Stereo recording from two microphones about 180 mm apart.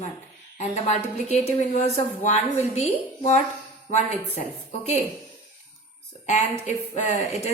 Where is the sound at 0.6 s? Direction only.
40° left (ahead or behind).